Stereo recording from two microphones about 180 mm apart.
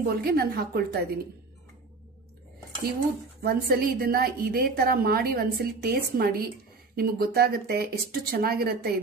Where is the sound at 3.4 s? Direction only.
55° right (ahead or behind).